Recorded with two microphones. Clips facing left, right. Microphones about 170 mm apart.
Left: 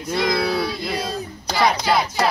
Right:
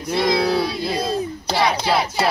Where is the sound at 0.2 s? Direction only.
25° right (ahead or behind).